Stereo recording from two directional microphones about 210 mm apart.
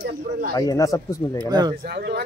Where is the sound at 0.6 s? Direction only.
15° left (ahead or behind).